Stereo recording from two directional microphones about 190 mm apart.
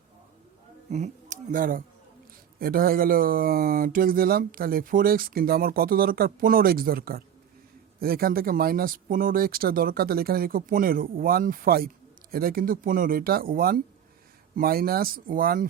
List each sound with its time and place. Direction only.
0.9 s speech: 35° right (ahead or behind)